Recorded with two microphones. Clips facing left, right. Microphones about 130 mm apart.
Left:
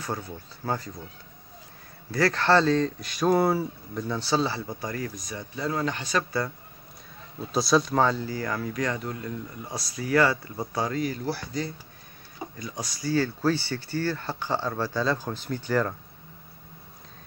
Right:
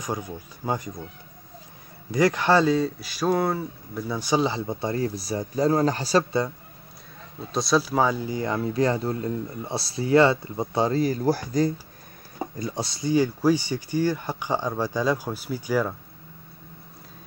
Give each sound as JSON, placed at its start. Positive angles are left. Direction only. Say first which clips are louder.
{"t": 0.0, "sound": "speech", "louder": "right 3 dB", "side_deg": -15}
{"t": 2.0, "sound": "speech", "louder": "right 2 dB", "side_deg": -15}
{"t": 4.1, "sound": "speech", "louder": "right 3 dB", "side_deg": -15}
{"t": 7.5, "sound": "speech", "louder": "even", "side_deg": 0}
{"t": 12.5, "sound": "speech", "louder": "right 7 dB", "side_deg": -30}